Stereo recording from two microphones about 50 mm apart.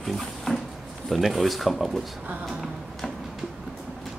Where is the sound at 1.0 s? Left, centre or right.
Centre.